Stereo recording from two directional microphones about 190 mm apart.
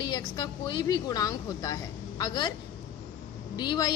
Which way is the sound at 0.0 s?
20° left (ahead or behind).